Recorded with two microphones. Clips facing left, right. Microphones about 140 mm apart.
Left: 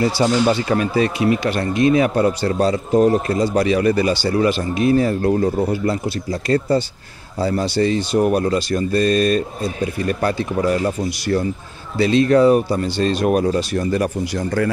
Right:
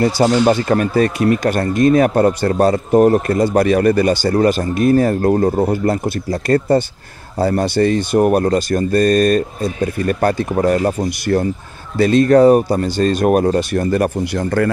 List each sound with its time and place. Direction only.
0.0 s speech: 45° right (ahead or behind)